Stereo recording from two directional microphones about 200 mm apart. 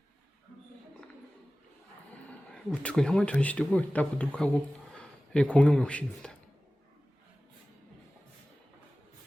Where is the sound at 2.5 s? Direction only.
5° left (ahead or behind).